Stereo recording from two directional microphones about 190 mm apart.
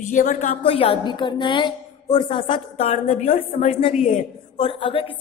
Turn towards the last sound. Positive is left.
turn(degrees=25)  # may be behind; listen again after turning